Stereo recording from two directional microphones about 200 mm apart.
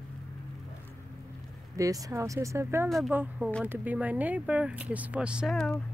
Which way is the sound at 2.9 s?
Centre (ahead or behind).